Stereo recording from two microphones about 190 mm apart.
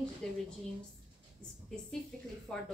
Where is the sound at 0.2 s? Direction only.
5° left (ahead or behind).